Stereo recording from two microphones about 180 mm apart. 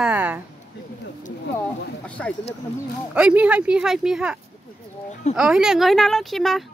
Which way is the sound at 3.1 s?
5° right (ahead or behind).